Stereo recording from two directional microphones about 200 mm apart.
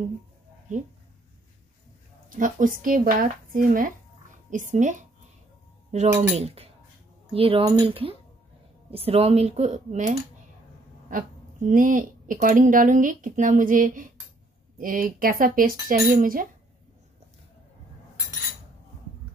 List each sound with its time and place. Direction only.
0.7 s speech: 40° right (ahead or behind)
2.2 s speech: 40° right (ahead or behind)